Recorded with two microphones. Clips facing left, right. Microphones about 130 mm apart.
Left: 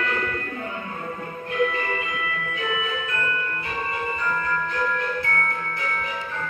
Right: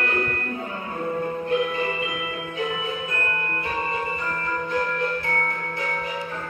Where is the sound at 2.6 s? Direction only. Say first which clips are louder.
Right 1 dB; 35° right (ahead or behind).